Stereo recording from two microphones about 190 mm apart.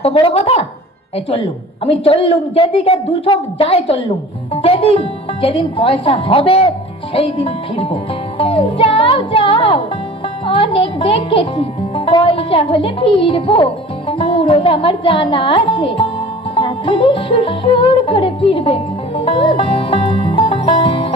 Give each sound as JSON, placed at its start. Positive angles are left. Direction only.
{"t": 0.0, "sound": "speech", "side_deg": 30}
{"t": 1.8, "sound": "a woman's voice", "side_deg": 30}
{"t": 16.6, "sound": "music", "side_deg": 25}